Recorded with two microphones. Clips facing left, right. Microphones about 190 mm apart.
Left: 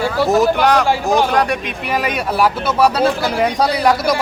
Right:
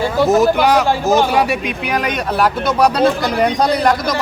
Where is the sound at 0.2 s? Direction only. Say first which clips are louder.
Right 2 dB; centre (ahead or behind).